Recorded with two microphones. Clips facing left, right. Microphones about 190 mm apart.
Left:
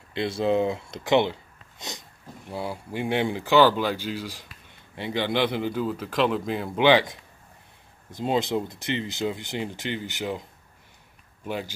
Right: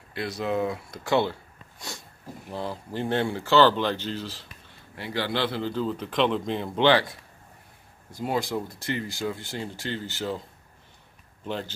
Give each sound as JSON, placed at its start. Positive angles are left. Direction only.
{"t": 0.1, "sound": "speech", "side_deg": 25}
{"t": 1.8, "sound": "a sound", "side_deg": 20}
{"t": 2.5, "sound": "speech", "side_deg": 10}
{"t": 6.9, "sound": "speech", "side_deg": 15}
{"t": 11.4, "sound": "speech", "side_deg": 10}